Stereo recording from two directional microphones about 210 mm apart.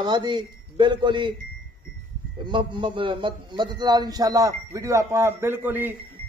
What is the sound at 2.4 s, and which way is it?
A man's voice, 20° right (ahead or behind).